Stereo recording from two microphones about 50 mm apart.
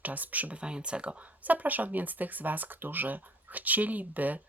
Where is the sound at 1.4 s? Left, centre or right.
Right.